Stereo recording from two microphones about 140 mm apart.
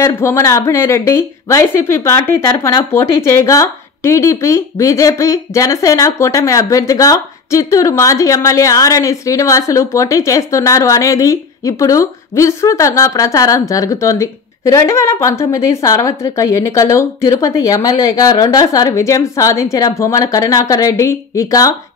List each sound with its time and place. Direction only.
0.0 s speech: 20° left (ahead or behind)